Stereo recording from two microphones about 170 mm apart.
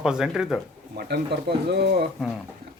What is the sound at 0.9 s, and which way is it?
Speech, 75° right (ahead or behind).